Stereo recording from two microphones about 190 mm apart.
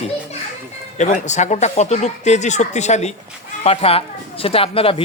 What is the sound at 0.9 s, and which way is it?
A man's voice, 40° left (ahead or behind).